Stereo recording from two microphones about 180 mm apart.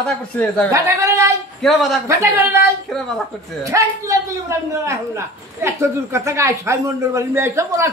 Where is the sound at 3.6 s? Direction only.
15° right (ahead or behind).